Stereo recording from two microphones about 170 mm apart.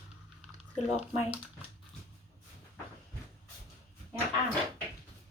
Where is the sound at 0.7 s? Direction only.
35° left (ahead or behind).